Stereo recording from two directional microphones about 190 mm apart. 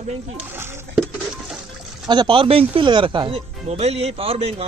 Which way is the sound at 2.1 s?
25° right (ahead or behind).